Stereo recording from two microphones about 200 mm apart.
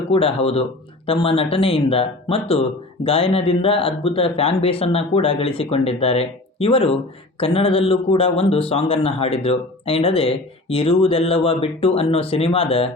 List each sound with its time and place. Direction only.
0.1 s speech: 30° left (ahead or behind)